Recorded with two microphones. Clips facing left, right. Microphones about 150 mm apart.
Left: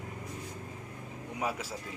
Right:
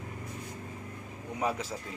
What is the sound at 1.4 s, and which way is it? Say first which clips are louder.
Speech: right 3 dB; 5° left (ahead or behind).